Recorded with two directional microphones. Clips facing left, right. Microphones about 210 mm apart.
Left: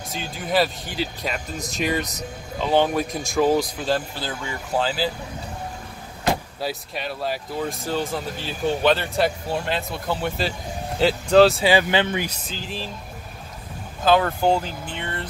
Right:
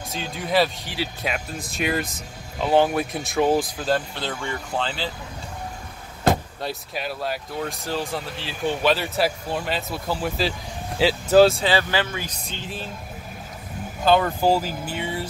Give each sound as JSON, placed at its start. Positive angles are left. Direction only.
{"t": 0.1, "sound": "speech", "side_deg": 0}
{"t": 6.6, "sound": "speech", "side_deg": 0}
{"t": 11.6, "sound": "speech", "side_deg": 20}
{"t": 12.3, "sound": "speech", "side_deg": 0}
{"t": 14.0, "sound": "speech", "side_deg": 0}